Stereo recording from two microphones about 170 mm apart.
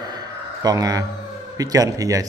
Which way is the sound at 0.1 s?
20° right (ahead or behind).